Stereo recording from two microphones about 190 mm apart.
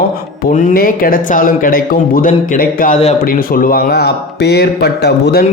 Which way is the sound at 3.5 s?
50° left (ahead or behind).